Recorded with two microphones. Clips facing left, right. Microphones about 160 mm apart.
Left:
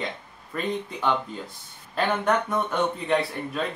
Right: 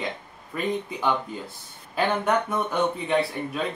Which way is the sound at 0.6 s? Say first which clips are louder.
Right 1 dB; 5° right (ahead or behind).